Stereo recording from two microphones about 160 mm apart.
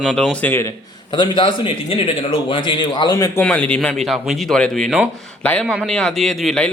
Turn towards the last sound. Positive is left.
turn(degrees=5)  # may be behind; listen again after turning